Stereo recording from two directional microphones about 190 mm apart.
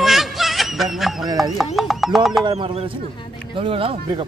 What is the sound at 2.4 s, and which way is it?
Speech, 25° right (ahead or behind).